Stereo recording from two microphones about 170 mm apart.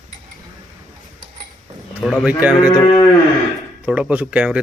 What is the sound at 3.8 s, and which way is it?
Speech, 10° right (ahead or behind).